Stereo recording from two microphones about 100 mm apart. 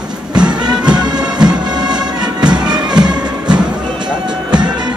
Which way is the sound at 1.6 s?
45° right (ahead or behind).